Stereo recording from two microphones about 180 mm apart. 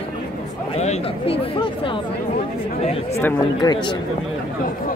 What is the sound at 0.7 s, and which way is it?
Speech, 40° left (ahead or behind).